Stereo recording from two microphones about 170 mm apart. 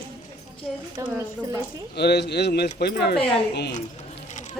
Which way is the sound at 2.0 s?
75° left (ahead or behind).